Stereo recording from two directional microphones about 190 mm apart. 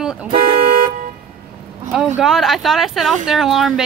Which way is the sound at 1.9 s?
Centre (ahead or behind).